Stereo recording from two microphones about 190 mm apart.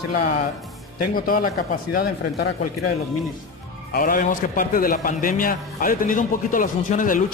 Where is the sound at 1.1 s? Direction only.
50° left (ahead or behind).